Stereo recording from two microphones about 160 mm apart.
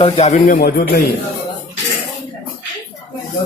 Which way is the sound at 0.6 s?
65° left (ahead or behind).